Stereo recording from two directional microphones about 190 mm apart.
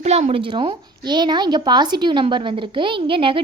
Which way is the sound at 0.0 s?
35° right (ahead or behind).